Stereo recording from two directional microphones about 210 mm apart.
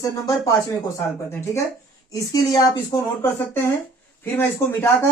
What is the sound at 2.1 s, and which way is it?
Speech, 15° left (ahead or behind).